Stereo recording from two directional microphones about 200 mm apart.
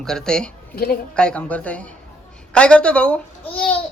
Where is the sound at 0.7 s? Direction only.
50° left (ahead or behind).